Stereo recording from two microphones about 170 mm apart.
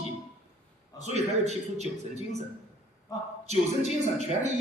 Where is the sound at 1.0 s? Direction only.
40° right (ahead or behind).